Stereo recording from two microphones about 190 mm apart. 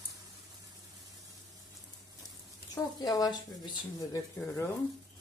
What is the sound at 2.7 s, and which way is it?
Speech, 20° left (ahead or behind).